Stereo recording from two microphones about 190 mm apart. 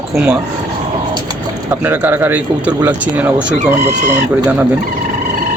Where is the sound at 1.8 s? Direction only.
10° right (ahead or behind).